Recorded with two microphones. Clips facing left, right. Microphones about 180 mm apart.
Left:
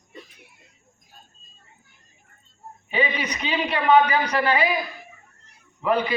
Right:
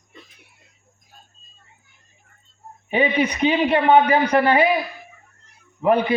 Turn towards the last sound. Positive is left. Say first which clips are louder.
# right 5 dB
turn(degrees=-55)  # may be behind; listen again after turning